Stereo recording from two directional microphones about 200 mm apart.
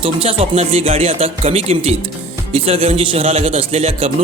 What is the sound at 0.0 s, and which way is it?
A man's voice, 30° right (ahead or behind).